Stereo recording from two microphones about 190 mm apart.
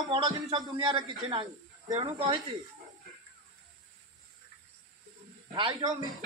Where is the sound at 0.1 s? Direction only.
25° right (ahead or behind).